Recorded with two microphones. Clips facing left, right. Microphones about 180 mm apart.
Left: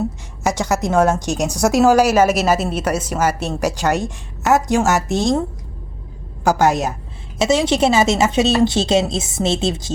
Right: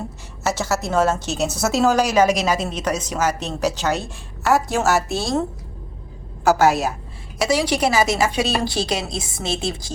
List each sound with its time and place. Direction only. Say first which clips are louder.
0.4 s a woman's voice: left 3 dB; 15° left (ahead or behind)
6.4 s a woman's voice: even; 15° left (ahead or behind)